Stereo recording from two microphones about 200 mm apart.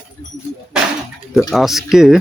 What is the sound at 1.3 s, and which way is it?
Speech, centre (ahead or behind).